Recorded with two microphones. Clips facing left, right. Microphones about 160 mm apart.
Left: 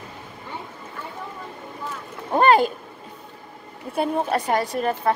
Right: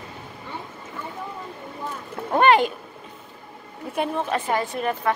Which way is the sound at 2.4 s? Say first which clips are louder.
Left 1 dB; 35° left (ahead or behind).